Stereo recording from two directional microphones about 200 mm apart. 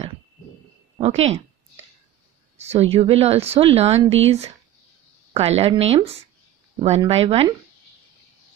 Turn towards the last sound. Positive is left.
turn(degrees=-30)  # may be behind; listen again after turning